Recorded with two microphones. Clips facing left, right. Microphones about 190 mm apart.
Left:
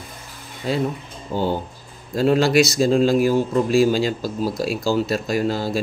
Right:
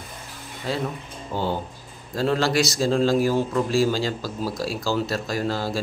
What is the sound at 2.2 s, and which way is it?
Speech, 15° left (ahead or behind).